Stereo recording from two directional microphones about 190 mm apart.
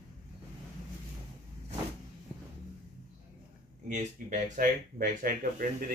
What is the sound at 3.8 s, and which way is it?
Speech, 45° right (ahead or behind).